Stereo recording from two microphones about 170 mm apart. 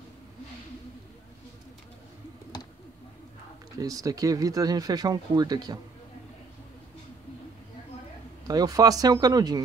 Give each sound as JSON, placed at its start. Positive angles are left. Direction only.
{"t": 3.8, "sound": "speech", "side_deg": -20}
{"t": 8.5, "sound": "speech", "side_deg": -20}